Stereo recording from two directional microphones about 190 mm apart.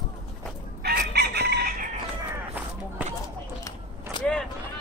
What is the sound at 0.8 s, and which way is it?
Chicken, 60° right (ahead or behind).